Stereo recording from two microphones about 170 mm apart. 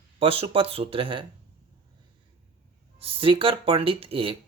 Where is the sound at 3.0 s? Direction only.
30° right (ahead or behind).